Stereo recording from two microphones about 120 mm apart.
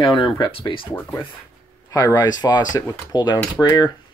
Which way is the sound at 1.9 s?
30° left (ahead or behind).